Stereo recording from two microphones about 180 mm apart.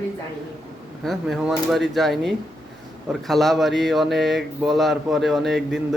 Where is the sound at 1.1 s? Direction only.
Centre (ahead or behind).